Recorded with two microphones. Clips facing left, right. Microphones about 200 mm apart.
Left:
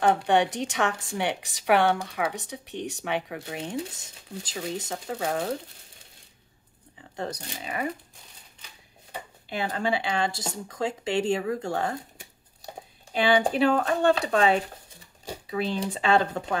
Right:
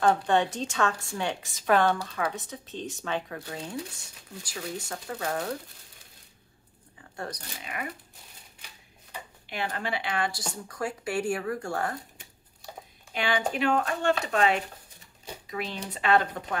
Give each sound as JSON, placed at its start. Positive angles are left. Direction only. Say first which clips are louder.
{"t": 0.0, "sound": "a woman's voice", "louder": "left 2 dB", "side_deg": 15}
{"t": 7.2, "sound": "speech", "louder": "left 4 dB", "side_deg": 30}
{"t": 9.7, "sound": "speech", "louder": "left 6 dB", "side_deg": 30}